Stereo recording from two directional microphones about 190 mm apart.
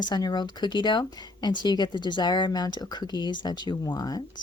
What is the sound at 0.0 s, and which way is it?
Speech, 20° left (ahead or behind).